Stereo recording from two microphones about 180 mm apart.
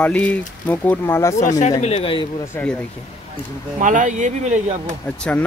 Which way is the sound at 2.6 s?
10° left (ahead or behind).